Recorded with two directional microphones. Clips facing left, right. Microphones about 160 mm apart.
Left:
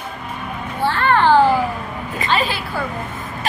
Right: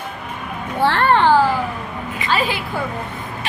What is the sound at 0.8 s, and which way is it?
Children playing, 70° right (ahead or behind).